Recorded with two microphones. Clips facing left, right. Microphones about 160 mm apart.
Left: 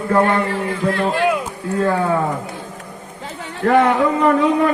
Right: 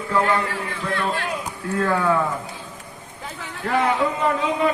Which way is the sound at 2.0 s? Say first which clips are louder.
Left 2 dB; 40° left (ahead or behind).